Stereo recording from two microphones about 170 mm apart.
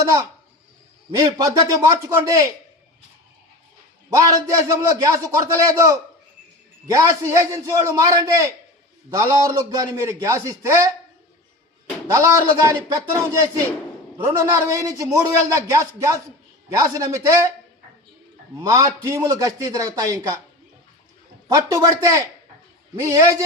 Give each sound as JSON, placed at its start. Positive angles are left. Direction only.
{"t": 1.1, "sound": "a man's voice", "side_deg": -20}
{"t": 4.1, "sound": "a man's voice", "side_deg": -20}
{"t": 12.1, "sound": "a man's voice", "side_deg": -20}
{"t": 18.7, "sound": "a man's voice", "side_deg": -15}
{"t": 21.4, "sound": "a man's voice", "side_deg": -20}